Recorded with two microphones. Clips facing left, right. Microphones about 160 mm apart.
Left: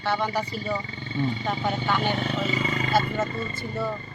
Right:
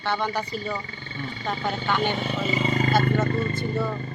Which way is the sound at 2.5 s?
25° right (ahead or behind).